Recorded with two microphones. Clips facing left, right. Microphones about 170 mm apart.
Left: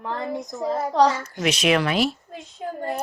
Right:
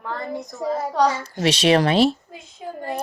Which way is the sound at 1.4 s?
30° right (ahead or behind).